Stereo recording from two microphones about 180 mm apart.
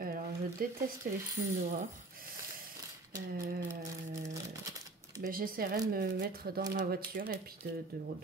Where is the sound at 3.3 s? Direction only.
50° right (ahead or behind).